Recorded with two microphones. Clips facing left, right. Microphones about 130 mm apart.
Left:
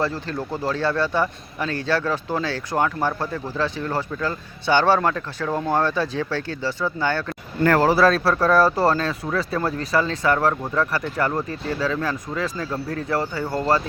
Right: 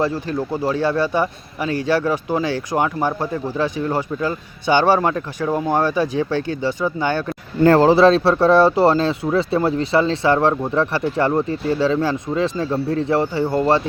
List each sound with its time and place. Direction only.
0.0 s speech: 15° right (ahead or behind)